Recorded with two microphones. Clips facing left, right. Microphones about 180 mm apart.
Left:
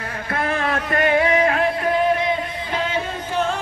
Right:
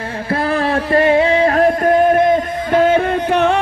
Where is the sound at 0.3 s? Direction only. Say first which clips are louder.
Right 6 dB; 35° right (ahead or behind).